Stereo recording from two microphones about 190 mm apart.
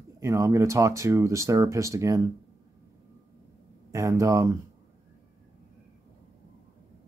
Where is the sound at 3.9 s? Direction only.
15° right (ahead or behind).